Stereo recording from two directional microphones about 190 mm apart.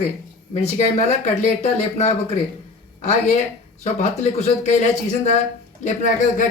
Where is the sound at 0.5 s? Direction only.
35° left (ahead or behind).